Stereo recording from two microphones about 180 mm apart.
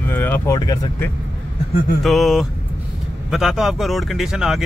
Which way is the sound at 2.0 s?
Centre (ahead or behind).